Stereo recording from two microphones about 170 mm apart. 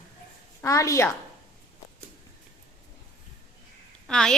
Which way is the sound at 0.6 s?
20° left (ahead or behind).